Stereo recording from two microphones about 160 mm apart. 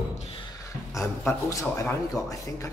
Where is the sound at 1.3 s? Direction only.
15° left (ahead or behind).